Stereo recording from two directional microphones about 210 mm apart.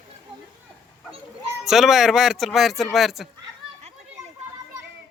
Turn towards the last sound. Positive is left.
turn(degrees=0)  # may be behind; listen again after turning